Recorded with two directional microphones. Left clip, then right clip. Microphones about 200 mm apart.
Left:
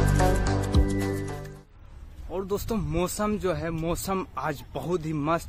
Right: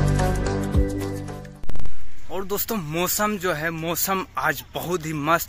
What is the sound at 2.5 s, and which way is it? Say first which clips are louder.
Speech: right 2 dB; centre (ahead or behind).